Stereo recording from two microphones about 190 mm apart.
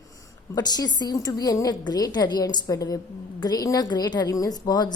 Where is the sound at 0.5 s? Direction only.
20° left (ahead or behind).